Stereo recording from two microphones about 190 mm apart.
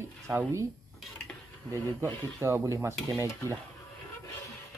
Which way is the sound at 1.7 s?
15° right (ahead or behind).